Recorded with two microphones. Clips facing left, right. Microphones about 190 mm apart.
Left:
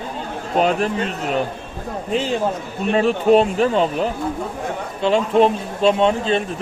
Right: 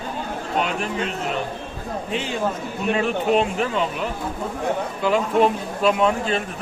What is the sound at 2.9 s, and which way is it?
Speech, 35° left (ahead or behind).